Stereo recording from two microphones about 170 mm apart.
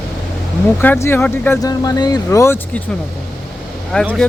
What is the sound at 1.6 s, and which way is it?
Speech, 20° left (ahead or behind).